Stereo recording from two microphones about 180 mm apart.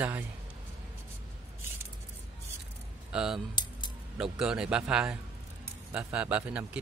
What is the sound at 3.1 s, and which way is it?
Speech, 5° right (ahead or behind).